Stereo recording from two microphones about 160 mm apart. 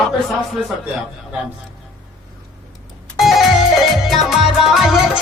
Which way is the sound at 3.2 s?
Centre (ahead or behind).